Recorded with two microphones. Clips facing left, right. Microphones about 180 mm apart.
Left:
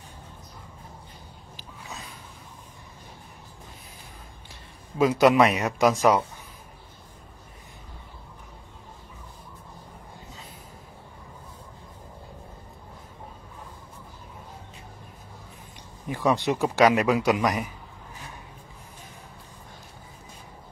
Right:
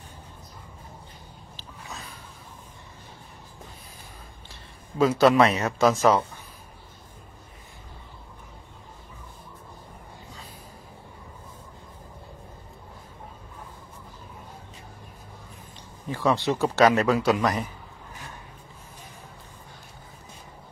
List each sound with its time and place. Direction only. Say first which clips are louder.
4.9 s a man's voice: even; 15° left (ahead or behind)
16.1 s a man's voice: even; 15° left (ahead or behind)